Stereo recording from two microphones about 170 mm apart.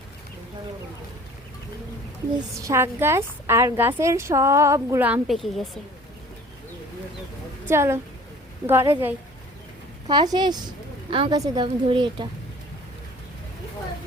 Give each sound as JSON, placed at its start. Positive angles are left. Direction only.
{"t": 2.6, "sound": "a woman's voice", "side_deg": -15}
{"t": 7.7, "sound": "a woman's voice", "side_deg": -15}
{"t": 10.1, "sound": "a woman's voice", "side_deg": -25}